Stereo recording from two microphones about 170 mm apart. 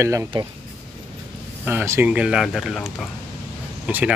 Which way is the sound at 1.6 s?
15° right (ahead or behind).